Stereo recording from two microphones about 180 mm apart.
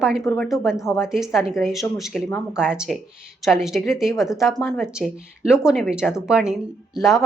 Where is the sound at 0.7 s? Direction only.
15° left (ahead or behind).